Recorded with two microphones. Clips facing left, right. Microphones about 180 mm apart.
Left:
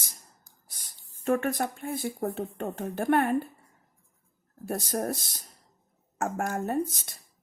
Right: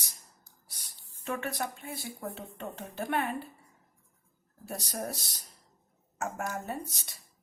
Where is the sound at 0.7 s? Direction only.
50° left (ahead or behind).